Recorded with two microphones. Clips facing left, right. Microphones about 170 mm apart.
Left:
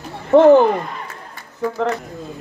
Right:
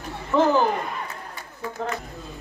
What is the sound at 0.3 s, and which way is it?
Speech, 60° left (ahead or behind).